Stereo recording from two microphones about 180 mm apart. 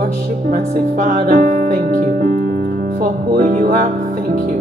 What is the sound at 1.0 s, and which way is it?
Music, 45° right (ahead or behind).